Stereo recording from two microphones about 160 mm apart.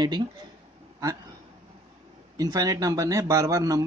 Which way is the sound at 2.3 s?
25° right (ahead or behind).